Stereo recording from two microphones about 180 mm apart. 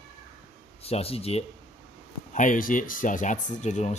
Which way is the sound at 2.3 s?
50° left (ahead or behind).